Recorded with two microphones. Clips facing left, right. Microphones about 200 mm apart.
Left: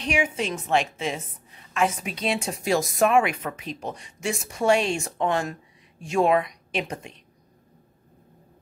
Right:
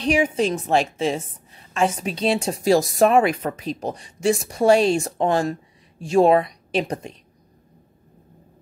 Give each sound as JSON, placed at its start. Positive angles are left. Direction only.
{"t": 0.0, "sound": "a woman's voice", "side_deg": -35}